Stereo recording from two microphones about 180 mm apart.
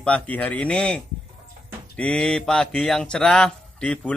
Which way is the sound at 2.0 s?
5° left (ahead or behind).